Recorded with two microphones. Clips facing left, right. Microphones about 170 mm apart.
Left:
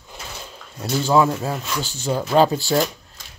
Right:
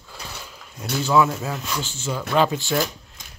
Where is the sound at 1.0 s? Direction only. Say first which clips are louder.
Left 1 dB; 35° left (ahead or behind).